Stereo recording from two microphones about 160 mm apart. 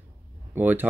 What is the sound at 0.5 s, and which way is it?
Speech, 10° right (ahead or behind).